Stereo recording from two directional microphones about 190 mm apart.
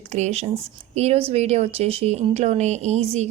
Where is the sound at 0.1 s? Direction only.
35° right (ahead or behind).